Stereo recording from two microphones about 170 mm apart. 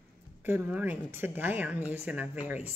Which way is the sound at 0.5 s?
10° right (ahead or behind).